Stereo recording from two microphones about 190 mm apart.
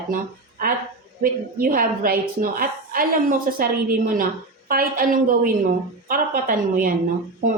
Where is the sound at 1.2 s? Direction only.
50° right (ahead or behind).